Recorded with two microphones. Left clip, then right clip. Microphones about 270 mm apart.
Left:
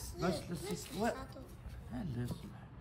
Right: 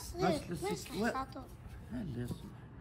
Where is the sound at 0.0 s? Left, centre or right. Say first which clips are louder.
Right 5 dB; centre.